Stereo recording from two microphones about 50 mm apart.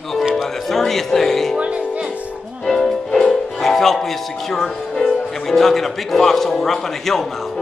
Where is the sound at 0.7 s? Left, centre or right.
Centre.